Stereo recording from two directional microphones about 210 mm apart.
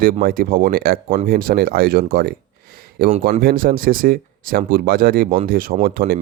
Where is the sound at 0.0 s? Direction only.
45° right (ahead or behind).